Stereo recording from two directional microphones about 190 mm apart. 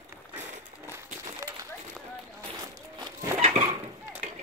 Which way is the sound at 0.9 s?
15° right (ahead or behind).